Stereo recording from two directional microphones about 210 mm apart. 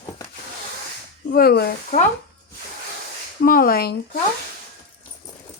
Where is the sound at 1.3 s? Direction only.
45° left (ahead or behind).